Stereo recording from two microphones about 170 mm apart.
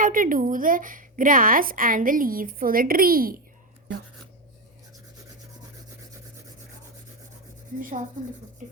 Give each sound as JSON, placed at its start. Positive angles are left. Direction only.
{"t": 0.0, "sound": "a woman's voice", "side_deg": -55}
{"t": 7.8, "sound": "a woman's voice", "side_deg": -55}